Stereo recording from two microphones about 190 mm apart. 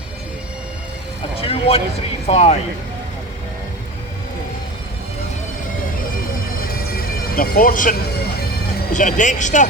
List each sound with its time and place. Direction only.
1.4 s music: 30° left (ahead or behind)
2.2 s speech: 35° left (ahead or behind)
6.6 s bagpipes: 50° left (ahead or behind)
8.9 s speech: 40° left (ahead or behind)